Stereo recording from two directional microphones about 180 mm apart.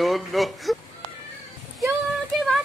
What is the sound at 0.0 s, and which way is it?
Speech, centre (ahead or behind).